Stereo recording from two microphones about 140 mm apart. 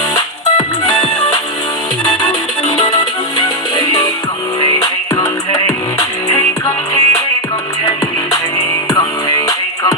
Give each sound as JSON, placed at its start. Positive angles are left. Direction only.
{"t": 3.3, "sound": "music", "side_deg": 30}
{"t": 8.5, "sound": "music", "side_deg": 25}